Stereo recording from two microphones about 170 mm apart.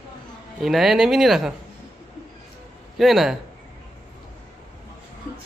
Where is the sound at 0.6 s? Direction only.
Centre (ahead or behind).